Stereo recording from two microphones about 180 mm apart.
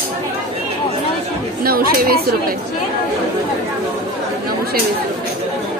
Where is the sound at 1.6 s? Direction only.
55° right (ahead or behind).